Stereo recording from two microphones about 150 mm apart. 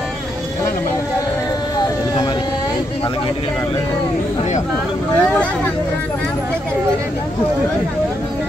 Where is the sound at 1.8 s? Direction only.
25° left (ahead or behind).